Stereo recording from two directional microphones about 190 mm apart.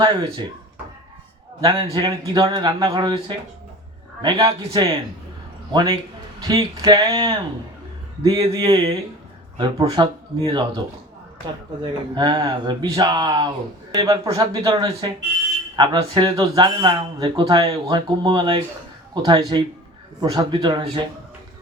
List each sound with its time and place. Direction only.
0.0 s speech: 25° right (ahead or behind)
1.6 s speech: 25° right (ahead or behind)
11.8 s speech: 25° right (ahead or behind)